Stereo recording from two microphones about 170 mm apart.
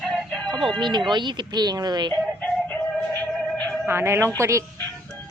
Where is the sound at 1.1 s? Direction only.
25° right (ahead or behind).